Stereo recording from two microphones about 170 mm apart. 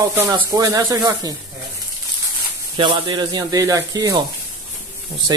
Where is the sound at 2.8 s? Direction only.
30° right (ahead or behind).